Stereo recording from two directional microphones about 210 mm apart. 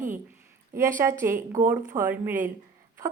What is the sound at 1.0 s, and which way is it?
A woman's voice, 15° right (ahead or behind).